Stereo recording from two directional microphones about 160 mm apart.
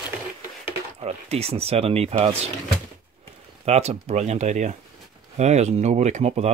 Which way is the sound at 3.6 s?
40° right (ahead or behind).